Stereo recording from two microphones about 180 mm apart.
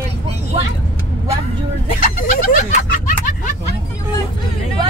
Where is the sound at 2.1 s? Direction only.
50° left (ahead or behind).